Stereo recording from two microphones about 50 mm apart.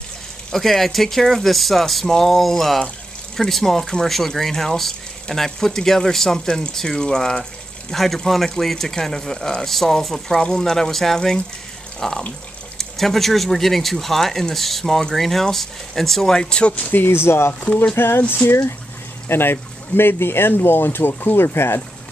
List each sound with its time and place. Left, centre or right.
0.5 s speech: centre
7.9 s speech: centre
16.7 s speech: left
17.0 s speech: left